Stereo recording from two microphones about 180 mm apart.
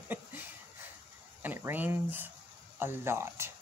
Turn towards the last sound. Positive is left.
turn(degrees=-15)  # may be behind; listen again after turning